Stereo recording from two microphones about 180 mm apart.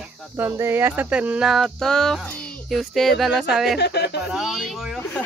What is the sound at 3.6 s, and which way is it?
Speech, 65° left (ahead or behind).